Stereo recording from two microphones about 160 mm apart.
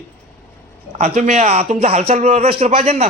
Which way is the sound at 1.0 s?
45° right (ahead or behind).